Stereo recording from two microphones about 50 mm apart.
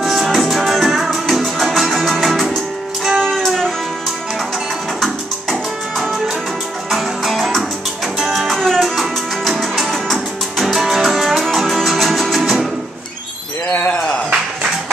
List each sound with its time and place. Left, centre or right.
0.0 s music: centre
3.3 s music: centre
5.0 s music: centre
13.7 s a sound: left